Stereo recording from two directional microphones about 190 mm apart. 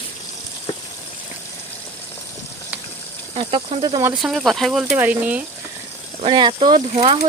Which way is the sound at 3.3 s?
30° right (ahead or behind).